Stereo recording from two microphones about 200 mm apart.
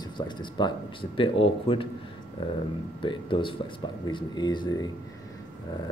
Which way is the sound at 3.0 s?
25° left (ahead or behind).